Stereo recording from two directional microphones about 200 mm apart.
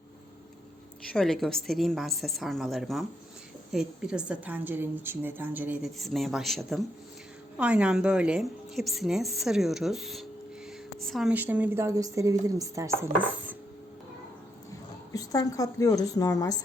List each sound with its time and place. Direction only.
1.1 s a woman's voice: centre (ahead or behind); by 13.1 s 15° right (ahead or behind)
15.1 s a woman's voice: 15° left (ahead or behind)